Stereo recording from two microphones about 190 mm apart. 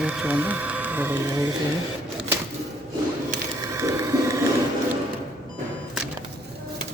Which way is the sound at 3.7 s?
15° right (ahead or behind).